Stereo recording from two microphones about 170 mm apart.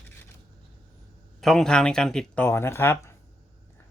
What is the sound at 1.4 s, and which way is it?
Speech, centre (ahead or behind).